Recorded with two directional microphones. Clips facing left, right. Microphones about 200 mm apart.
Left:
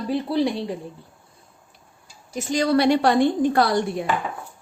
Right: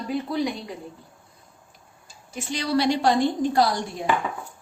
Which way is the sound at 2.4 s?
45° left (ahead or behind).